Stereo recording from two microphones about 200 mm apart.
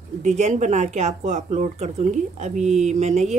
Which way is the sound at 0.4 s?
35° right (ahead or behind).